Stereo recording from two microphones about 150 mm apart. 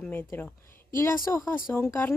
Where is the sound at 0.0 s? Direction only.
15° left (ahead or behind).